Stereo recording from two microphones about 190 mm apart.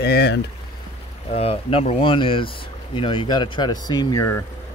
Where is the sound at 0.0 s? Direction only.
60° left (ahead or behind).